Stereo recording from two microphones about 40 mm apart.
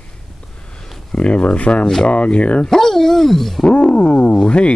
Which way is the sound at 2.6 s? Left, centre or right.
Centre.